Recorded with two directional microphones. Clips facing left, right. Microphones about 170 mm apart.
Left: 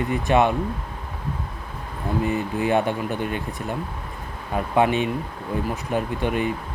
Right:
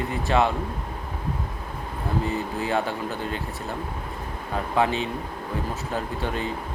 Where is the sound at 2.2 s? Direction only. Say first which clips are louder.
Left 4 dB; 20° left (ahead or behind).